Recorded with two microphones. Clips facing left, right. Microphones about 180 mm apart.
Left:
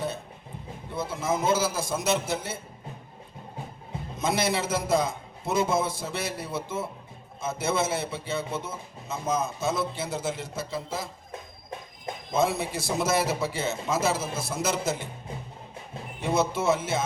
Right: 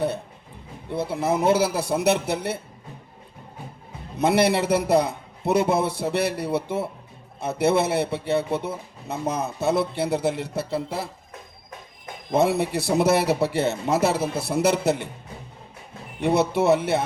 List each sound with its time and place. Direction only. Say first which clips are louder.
0.9 s speech: right 5 dB; 65° right (ahead or behind)
4.2 s speech: right 7 dB; 65° right (ahead or behind)
12.3 s speech: right 5 dB; 65° right (ahead or behind)
16.2 s speech: right 5 dB; 65° right (ahead or behind)